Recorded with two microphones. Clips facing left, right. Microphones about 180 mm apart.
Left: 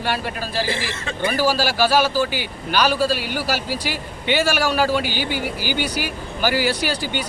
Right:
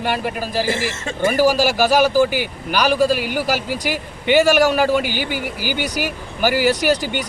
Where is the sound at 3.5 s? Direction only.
50° right (ahead or behind).